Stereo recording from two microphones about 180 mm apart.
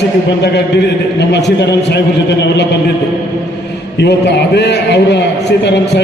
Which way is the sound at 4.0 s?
70° left (ahead or behind).